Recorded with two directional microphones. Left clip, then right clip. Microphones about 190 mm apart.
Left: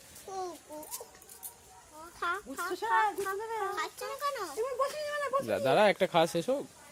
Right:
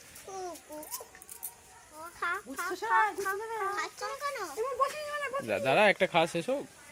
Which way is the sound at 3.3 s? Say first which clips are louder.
Right 1 dB; 15° left (ahead or behind).